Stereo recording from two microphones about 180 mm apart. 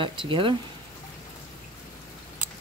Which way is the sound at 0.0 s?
30° right (ahead or behind).